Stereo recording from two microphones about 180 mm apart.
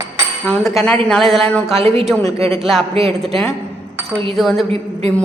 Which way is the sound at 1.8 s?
35° right (ahead or behind).